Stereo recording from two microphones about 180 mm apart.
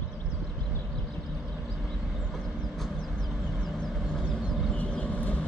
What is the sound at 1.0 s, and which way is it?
Vehicle, centre (ahead or behind).